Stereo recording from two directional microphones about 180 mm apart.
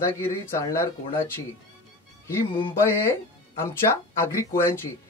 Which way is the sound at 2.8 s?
15° left (ahead or behind).